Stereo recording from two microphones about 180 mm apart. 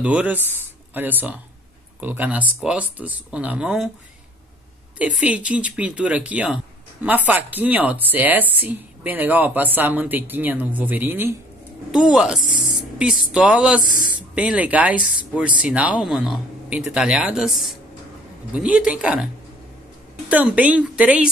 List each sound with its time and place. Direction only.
0.0 s speech: 10° right (ahead or behind)
4.9 s speech: 5° right (ahead or behind)
13.8 s speech: 50° left (ahead or behind)
14.3 s speech: 10° right (ahead or behind)
18.5 s speech: 5° right (ahead or behind)